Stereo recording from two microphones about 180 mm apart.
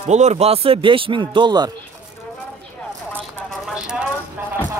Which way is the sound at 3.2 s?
5° right (ahead or behind).